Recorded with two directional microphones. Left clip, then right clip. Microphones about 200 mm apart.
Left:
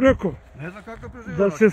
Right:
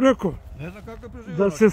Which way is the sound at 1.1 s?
15° right (ahead or behind).